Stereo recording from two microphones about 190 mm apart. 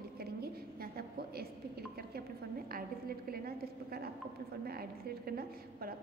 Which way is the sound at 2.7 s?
50° right (ahead or behind).